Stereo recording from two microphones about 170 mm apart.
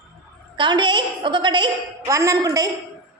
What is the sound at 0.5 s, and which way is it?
A woman's voice, 30° right (ahead or behind).